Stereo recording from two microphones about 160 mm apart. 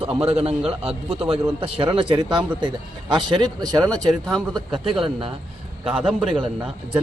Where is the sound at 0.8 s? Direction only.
35° right (ahead or behind).